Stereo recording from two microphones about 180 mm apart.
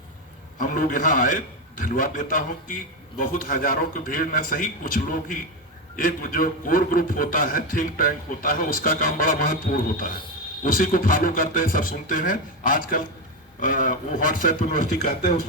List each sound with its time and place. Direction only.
0.6 s a man's voice: 50° left (ahead or behind)